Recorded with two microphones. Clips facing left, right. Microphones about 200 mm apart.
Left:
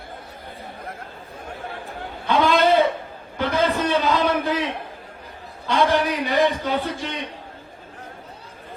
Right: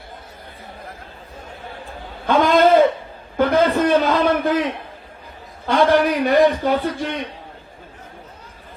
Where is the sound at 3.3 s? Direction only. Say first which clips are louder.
Right 5 dB; 55° right (ahead or behind).